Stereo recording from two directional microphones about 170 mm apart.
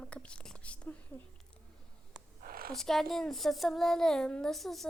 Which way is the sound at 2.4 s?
60° right (ahead or behind).